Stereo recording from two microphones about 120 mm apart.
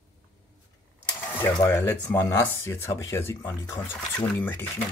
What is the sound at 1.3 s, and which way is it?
Speech, 20° left (ahead or behind).